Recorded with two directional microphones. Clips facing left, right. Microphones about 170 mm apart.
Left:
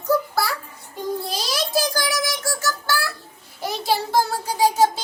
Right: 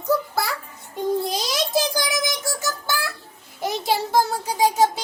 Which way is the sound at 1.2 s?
20° right (ahead or behind).